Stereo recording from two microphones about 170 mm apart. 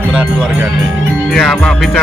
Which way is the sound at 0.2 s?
10° right (ahead or behind).